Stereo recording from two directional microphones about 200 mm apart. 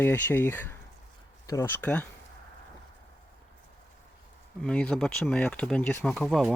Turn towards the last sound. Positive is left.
turn(degrees=0)  # may be behind; listen again after turning